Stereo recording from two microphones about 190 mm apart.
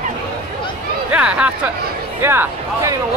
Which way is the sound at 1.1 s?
5° right (ahead or behind).